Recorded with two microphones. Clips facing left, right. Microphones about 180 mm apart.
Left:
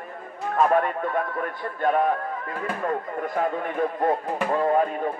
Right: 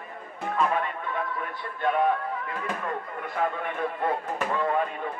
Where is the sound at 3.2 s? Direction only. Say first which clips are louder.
Left 1 dB; 40° left (ahead or behind).